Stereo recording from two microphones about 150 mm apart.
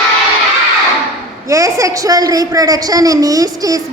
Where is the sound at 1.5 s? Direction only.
20° right (ahead or behind).